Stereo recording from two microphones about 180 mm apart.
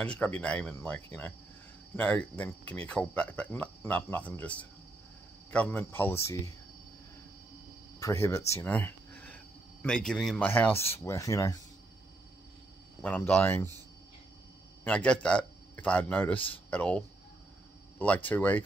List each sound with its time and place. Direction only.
0.0 s speech: 10° left (ahead or behind)
8.0 s a sound: 15° left (ahead or behind)
10.0 s speech: 5° left (ahead or behind)
13.0 s speech: 10° left (ahead or behind)
14.9 s speech: 5° left (ahead or behind)
16.3 s speech: 30° left (ahead or behind)
16.7 s speech: 5° left (ahead or behind)